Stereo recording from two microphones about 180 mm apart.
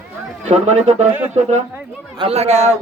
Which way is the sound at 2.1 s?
35° right (ahead or behind).